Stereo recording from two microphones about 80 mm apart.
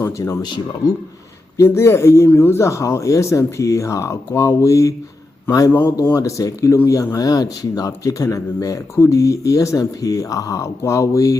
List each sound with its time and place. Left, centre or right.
0.0 s speech: left
1.5 s speech: left